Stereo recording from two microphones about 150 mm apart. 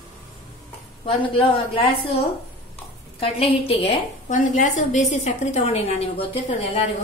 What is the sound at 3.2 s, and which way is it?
A woman's voice, 40° left (ahead or behind).